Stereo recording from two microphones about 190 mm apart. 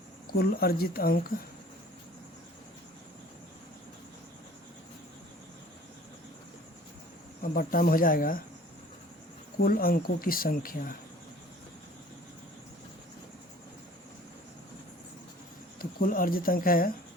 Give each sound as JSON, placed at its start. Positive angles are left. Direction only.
{"t": 0.3, "sound": "speech", "side_deg": 55}
{"t": 7.4, "sound": "speech", "side_deg": 50}
{"t": 9.6, "sound": "speech", "side_deg": 50}
{"t": 15.8, "sound": "speech", "side_deg": 50}